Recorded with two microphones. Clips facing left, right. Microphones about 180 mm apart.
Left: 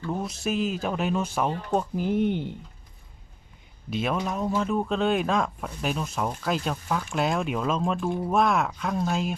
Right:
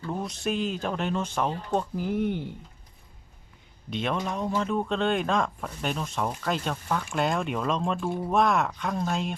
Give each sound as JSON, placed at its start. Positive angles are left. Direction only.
{"t": 0.1, "sound": "speech", "side_deg": 0}
{"t": 2.0, "sound": "speech", "side_deg": 25}
{"t": 3.8, "sound": "speech", "side_deg": 5}